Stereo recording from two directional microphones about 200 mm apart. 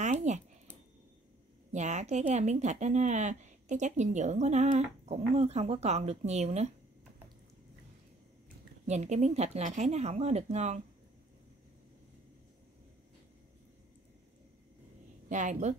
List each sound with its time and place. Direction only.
0.0 s a sound: 35° right (ahead or behind)
1.7 s speech: 35° right (ahead or behind)
8.8 s speech: 35° right (ahead or behind)
15.2 s a woman's voice: 40° right (ahead or behind)